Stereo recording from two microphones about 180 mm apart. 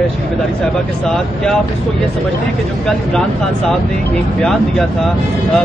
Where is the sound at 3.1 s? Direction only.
5° left (ahead or behind).